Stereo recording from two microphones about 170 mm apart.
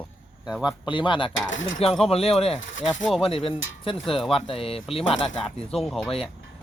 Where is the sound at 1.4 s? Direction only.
90° left.